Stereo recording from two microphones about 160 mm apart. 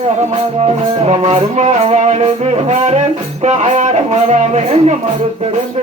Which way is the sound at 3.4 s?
45° right (ahead or behind).